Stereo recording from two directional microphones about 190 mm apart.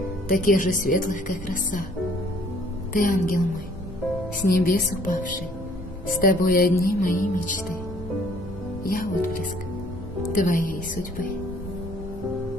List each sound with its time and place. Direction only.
0.3 s a woman's voice: 45° left (ahead or behind)
2.9 s a woman's voice: 45° left (ahead or behind)
4.5 s a woman's voice: 50° left (ahead or behind)
8.8 s a woman's voice: 50° left (ahead or behind)